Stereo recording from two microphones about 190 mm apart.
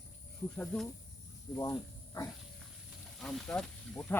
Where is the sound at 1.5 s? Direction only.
15° left (ahead or behind).